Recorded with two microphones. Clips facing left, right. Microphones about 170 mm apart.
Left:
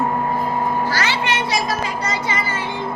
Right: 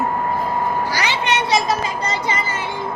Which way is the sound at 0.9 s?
15° right (ahead or behind).